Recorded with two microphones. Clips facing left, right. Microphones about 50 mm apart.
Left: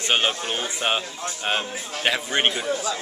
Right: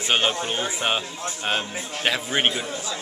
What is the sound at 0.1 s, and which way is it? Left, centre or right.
Speech, centre.